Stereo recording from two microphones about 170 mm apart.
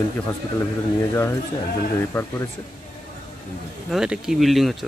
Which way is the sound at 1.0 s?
15° left (ahead or behind).